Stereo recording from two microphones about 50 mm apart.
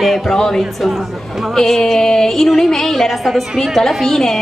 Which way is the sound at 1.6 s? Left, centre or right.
Centre.